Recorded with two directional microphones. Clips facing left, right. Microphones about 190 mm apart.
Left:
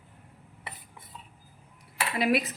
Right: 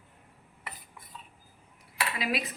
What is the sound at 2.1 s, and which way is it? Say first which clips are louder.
Speech: left 8 dB; 55° left (ahead or behind).